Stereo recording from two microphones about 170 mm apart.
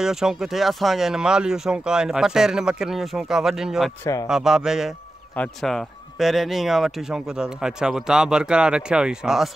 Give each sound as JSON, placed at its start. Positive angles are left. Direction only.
{"t": 0.0, "sound": "speech", "side_deg": -5}
{"t": 4.0, "sound": "speech", "side_deg": 20}
{"t": 4.3, "sound": "speech", "side_deg": -5}